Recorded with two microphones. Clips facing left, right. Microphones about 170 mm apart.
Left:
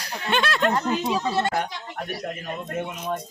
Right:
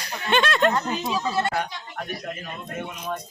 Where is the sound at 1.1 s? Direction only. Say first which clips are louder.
Left 1 dB; 25° left (ahead or behind).